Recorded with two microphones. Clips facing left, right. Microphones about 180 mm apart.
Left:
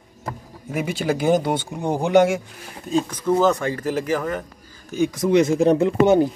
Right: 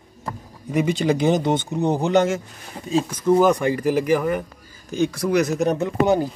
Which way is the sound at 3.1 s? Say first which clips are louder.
Right 3 dB; 10° right (ahead or behind).